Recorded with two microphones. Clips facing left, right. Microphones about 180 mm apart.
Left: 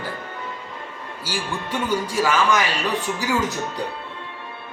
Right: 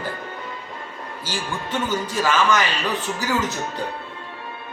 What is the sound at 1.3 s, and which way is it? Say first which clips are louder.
A man's voice: left 1 dB; 10° left (ahead or behind).